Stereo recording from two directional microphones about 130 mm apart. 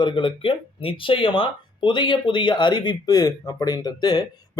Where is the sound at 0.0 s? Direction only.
40° left (ahead or behind).